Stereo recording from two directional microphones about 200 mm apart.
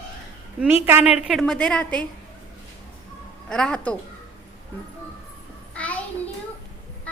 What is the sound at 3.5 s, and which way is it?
Speech, 5° left (ahead or behind).